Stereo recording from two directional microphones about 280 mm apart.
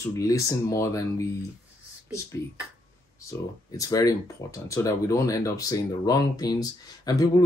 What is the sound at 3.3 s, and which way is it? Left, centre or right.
Speech, centre.